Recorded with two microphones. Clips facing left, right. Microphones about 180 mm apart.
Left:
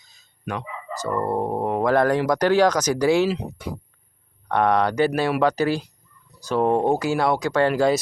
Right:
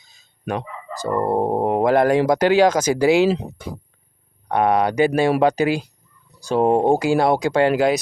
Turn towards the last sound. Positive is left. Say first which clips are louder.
# right 2 dB
turn(degrees=-15)  # may be behind; listen again after turning